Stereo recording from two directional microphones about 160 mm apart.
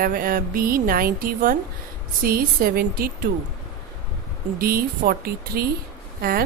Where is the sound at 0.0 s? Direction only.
60° right (ahead or behind).